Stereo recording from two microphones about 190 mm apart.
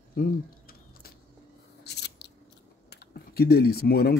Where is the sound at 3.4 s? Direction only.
55° left (ahead or behind).